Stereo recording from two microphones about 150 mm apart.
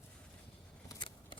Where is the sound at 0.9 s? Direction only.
30° left (ahead or behind).